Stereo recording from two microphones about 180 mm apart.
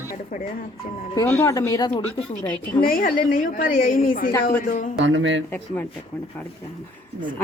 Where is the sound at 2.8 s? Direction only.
55° left (ahead or behind).